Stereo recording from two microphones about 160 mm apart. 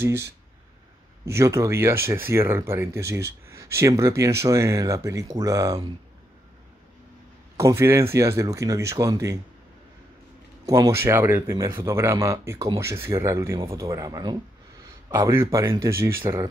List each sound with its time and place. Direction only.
0.0 s speech: 15° right (ahead or behind)
7.5 s speech: 15° right (ahead or behind)
10.6 s speech: 20° right (ahead or behind)